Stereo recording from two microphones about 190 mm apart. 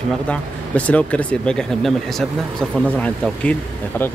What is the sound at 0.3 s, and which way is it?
Speech, 5° left (ahead or behind).